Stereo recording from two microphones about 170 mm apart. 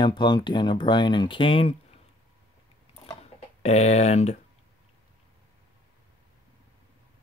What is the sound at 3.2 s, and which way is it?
Chicken, 40° left (ahead or behind).